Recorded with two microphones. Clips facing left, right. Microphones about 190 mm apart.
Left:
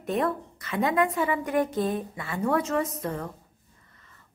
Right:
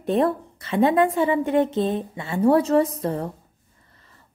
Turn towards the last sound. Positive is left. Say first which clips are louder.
# right 2 dB
turn(degrees=-30)  # may be behind; listen again after turning